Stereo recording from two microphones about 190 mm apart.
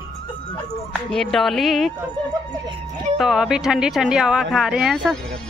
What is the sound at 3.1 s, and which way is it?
A woman's voice, centre (ahead or behind).